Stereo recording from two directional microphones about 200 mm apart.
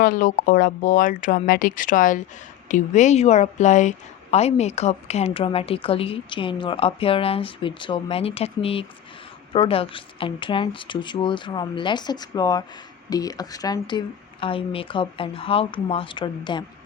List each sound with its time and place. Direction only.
0.0 s a woman's voice: 40° left (ahead or behind); by 16.6 s 20° left (ahead or behind)